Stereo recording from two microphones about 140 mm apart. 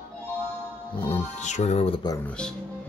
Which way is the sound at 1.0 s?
50° left (ahead or behind).